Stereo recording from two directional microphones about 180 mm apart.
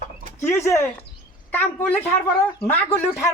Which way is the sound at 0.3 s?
15° left (ahead or behind).